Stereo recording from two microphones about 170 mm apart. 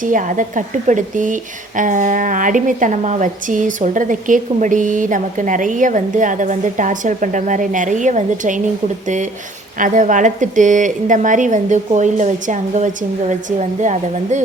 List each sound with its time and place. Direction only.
0.0 s a woman's voice: 50° right (ahead or behind)
9.7 s a woman's voice: 50° right (ahead or behind)